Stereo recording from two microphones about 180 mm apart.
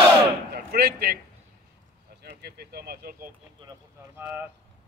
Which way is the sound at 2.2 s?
60° right (ahead or behind).